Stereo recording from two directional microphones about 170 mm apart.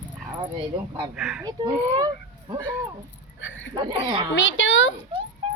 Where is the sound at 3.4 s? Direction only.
90° left.